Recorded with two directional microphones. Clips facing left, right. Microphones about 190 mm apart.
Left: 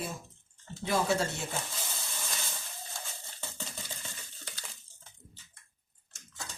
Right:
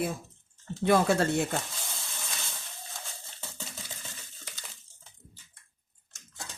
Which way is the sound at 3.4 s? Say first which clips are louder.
Left 1 dB; centre (ahead or behind).